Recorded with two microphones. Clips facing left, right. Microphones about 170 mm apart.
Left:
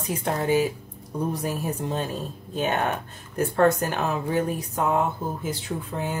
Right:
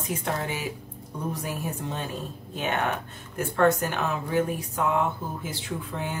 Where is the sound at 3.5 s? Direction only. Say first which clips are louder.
Left 1 dB; 35° left (ahead or behind).